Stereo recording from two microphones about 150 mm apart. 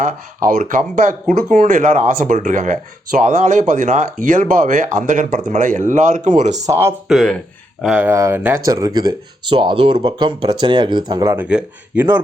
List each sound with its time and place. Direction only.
0.0 s speech: 60° right (ahead or behind)
6.7 s speech: 15° right (ahead or behind)
7.1 s speech: centre (ahead or behind)
8.0 s speech: 20° right (ahead or behind)
11.3 s speech: 10° right (ahead or behind)